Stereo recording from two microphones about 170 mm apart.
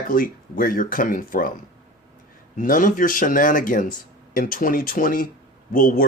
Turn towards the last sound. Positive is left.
turn(degrees=55)  # may be behind; listen again after turning